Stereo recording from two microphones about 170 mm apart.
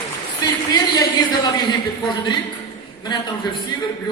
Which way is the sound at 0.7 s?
25° left (ahead or behind).